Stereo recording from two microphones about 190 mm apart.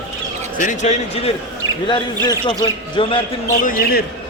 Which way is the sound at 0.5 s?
40° left (ahead or behind).